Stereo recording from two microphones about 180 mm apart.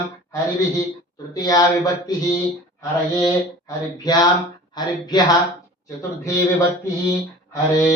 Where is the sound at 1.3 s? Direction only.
20° left (ahead or behind).